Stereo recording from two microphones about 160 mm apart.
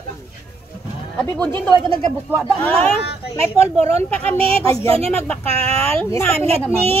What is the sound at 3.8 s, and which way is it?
Speech, 40° right (ahead or behind).